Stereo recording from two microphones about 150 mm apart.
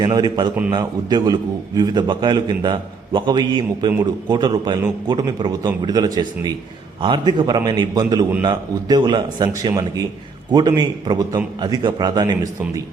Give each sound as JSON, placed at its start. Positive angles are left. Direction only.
{"t": 0.0, "sound": "a man's voice", "side_deg": -25}